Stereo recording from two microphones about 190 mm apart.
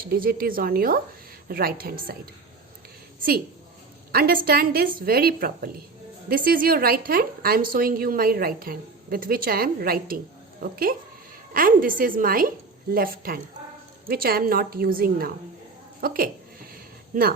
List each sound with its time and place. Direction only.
0.1 s a woman's voice: 50° right (ahead or behind)
4.1 s a woman's voice: 50° right (ahead or behind)